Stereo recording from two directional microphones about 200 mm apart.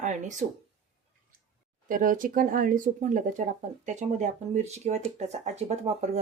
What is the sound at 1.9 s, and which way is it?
Speech, 40° right (ahead or behind).